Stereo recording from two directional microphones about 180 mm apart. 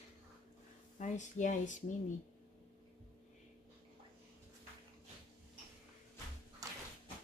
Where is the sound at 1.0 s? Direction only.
45° left (ahead or behind).